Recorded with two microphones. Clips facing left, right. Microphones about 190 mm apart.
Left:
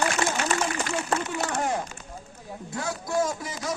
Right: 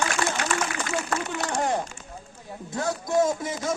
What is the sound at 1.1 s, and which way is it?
Speech, 30° left (ahead or behind).